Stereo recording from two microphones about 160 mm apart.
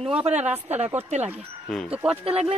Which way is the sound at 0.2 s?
45° right (ahead or behind).